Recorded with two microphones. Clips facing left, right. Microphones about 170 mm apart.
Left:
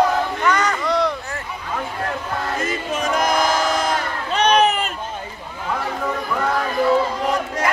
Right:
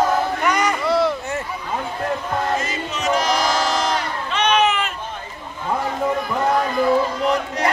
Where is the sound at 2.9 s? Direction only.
50° left (ahead or behind).